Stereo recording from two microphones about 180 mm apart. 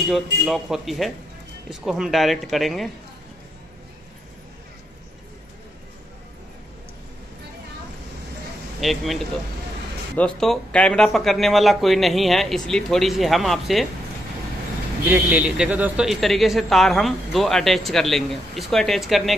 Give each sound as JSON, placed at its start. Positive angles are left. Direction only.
{"t": 0.1, "sound": "a man's voice", "side_deg": 0}
{"t": 8.8, "sound": "a man's voice", "side_deg": 0}
{"t": 15.0, "sound": "a man's voice", "side_deg": -10}